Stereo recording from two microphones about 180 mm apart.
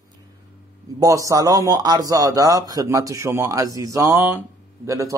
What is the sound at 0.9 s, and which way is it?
A man's voice, 20° right (ahead or behind).